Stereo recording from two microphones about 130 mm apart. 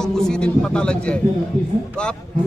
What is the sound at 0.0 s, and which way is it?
A man's voice, 5° left (ahead or behind).